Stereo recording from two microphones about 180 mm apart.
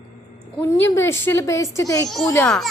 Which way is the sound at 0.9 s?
15° left (ahead or behind).